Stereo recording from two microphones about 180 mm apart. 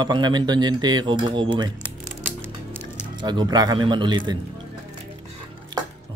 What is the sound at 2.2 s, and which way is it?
Music, 10° right (ahead or behind).